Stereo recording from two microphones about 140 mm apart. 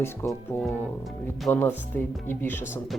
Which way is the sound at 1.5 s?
20° left (ahead or behind).